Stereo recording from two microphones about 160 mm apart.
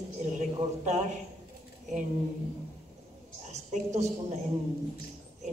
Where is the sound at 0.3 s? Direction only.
50° right (ahead or behind).